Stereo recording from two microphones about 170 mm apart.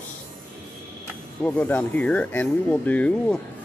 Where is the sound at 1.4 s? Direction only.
10° left (ahead or behind).